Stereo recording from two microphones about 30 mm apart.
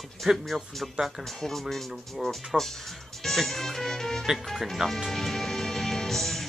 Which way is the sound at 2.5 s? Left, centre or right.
Centre.